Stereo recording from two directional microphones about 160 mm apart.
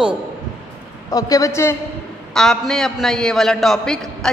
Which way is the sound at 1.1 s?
20° left (ahead or behind).